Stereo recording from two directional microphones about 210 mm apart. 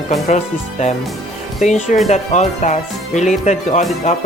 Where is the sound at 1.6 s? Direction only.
35° left (ahead or behind).